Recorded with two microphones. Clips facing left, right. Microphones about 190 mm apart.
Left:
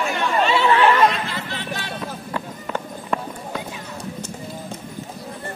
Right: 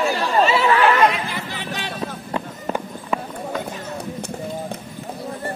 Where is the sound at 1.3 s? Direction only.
15° right (ahead or behind).